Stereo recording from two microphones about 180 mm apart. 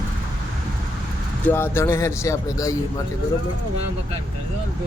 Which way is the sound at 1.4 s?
10° left (ahead or behind).